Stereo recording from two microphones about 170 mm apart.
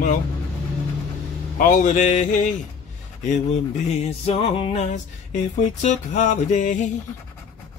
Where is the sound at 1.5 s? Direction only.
45° left (ahead or behind).